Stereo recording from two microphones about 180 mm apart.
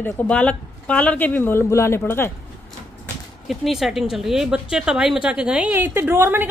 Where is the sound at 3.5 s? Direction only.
Centre (ahead or behind).